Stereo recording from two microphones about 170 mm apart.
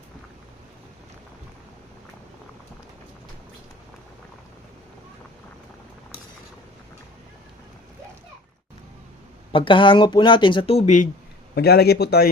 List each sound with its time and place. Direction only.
9.5 s speech: 30° left (ahead or behind); by 11.1 s 45° left (ahead or behind)
11.5 s a man's voice: 70° left (ahead or behind)